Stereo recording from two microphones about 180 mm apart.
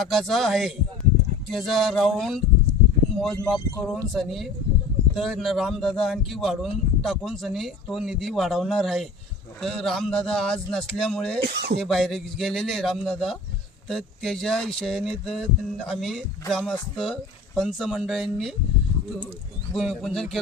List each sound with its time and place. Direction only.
0.0 s speech: centre (ahead or behind)
11.3 s speech: 65° right (ahead or behind)
11.8 s speech: centre (ahead or behind)
19.7 s speech: centre (ahead or behind)